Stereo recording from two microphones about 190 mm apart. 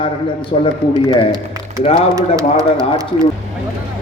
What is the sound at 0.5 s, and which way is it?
Speech, 40° left (ahead or behind).